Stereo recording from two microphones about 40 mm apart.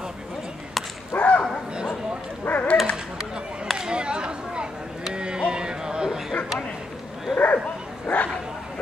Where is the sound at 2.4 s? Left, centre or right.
Left.